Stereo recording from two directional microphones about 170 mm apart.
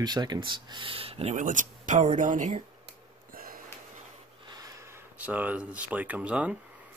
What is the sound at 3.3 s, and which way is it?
Gasp, 55° right (ahead or behind).